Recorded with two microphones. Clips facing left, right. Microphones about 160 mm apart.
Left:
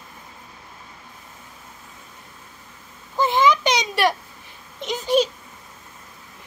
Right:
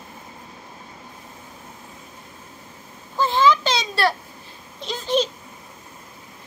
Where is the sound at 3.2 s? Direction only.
15° left (ahead or behind).